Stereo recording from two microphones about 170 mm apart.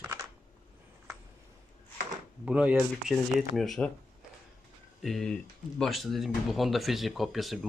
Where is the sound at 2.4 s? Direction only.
5° right (ahead or behind).